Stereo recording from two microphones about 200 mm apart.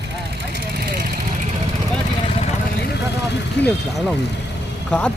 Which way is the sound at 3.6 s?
5° left (ahead or behind).